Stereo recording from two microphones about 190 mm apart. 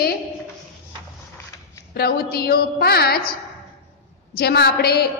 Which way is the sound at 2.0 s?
55° left (ahead or behind).